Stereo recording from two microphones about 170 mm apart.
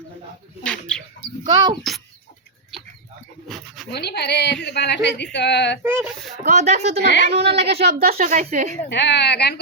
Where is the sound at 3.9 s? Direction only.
75° left (ahead or behind).